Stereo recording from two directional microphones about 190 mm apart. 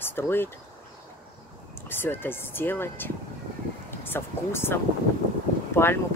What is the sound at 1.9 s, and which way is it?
Speech, 10° left (ahead or behind).